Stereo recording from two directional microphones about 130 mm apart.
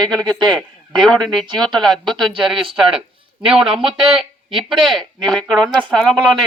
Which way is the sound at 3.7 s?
5° right (ahead or behind).